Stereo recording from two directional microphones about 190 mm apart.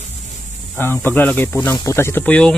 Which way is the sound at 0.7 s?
10° left (ahead or behind).